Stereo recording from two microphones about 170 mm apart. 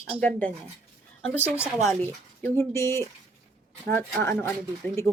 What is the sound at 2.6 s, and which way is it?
Speech, 15° left (ahead or behind).